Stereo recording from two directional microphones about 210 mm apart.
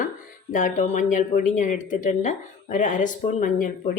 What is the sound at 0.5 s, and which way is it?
Speech, 40° left (ahead or behind).